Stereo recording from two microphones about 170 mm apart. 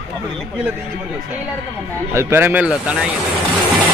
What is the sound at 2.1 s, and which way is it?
Speech, 15° right (ahead or behind).